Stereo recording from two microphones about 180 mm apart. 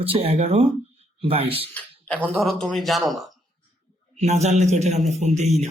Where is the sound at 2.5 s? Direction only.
Centre (ahead or behind).